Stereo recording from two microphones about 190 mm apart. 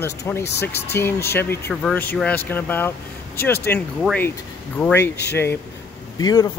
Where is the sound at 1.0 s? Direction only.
10° left (ahead or behind).